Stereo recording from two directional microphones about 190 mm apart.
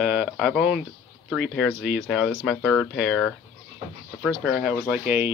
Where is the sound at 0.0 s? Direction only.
5° right (ahead or behind).